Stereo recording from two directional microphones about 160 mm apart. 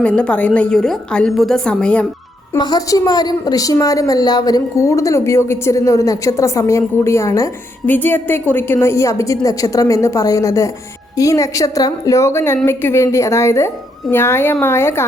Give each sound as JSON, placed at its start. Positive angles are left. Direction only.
{"t": 0.0, "sound": "a woman's voice", "side_deg": 10}
{"t": 2.6, "sound": "a woman's voice", "side_deg": 25}